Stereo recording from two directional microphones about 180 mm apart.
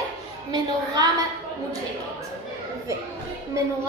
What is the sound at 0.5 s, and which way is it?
Speech, 20° right (ahead or behind).